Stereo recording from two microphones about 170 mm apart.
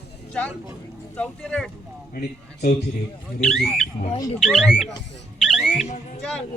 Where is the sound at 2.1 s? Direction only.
60° left (ahead or behind).